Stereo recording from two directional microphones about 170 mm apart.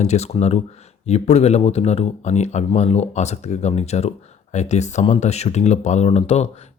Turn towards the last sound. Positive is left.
turn(degrees=40)  # may be behind; listen again after turning